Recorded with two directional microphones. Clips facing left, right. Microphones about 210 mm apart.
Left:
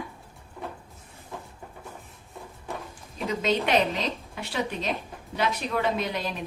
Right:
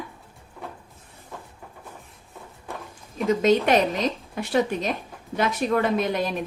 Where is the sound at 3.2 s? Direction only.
45° right (ahead or behind).